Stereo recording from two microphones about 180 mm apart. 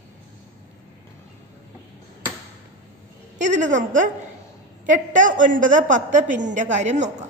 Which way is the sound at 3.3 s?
40° right (ahead or behind).